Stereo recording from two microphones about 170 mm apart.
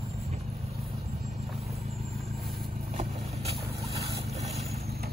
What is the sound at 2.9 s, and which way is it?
Vehicle, 45° right (ahead or behind).